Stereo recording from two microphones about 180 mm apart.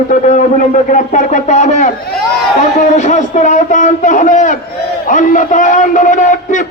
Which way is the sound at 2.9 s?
40° left (ahead or behind).